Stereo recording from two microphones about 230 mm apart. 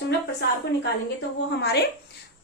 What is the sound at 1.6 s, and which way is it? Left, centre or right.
Speech, left.